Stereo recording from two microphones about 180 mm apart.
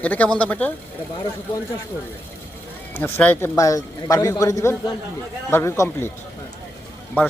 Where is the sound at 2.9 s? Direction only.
10° left (ahead or behind).